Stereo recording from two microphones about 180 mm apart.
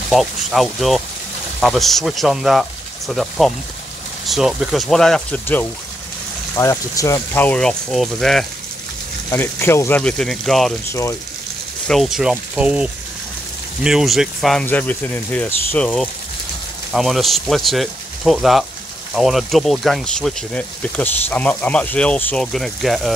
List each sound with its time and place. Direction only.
0.1 s speech: centre (ahead or behind)
9.3 s speech: 15° left (ahead or behind)
10.9 s speech: 15° left (ahead or behind)
11.9 s speech: centre (ahead or behind)